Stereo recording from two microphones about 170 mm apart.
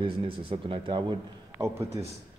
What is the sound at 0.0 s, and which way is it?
A man's voice, 30° right (ahead or behind).